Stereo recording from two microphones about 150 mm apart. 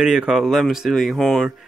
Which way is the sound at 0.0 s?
5° right (ahead or behind).